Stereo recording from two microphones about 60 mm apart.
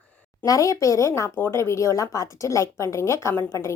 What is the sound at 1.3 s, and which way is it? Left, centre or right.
A woman's voice, left.